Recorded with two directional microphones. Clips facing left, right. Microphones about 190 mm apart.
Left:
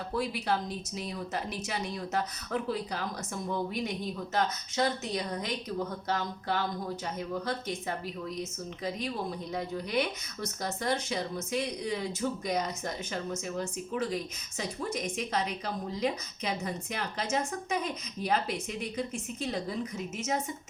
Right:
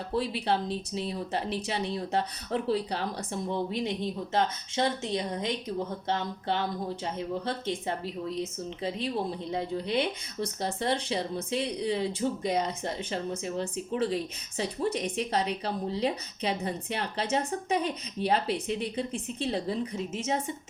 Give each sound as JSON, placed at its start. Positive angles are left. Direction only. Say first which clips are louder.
{"t": 0.1, "sound": "speech", "louder": "right 3 dB", "side_deg": -30}